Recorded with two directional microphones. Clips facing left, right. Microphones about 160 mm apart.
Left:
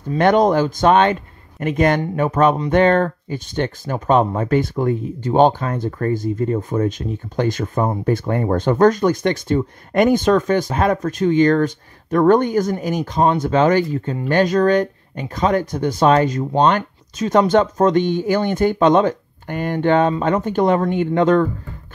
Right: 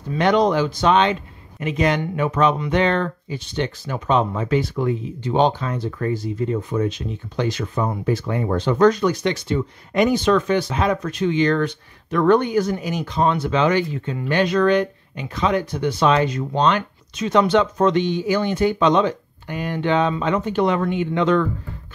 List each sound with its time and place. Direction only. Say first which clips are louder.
0.2 s speech: left 3 dB; 50° left (ahead or behind)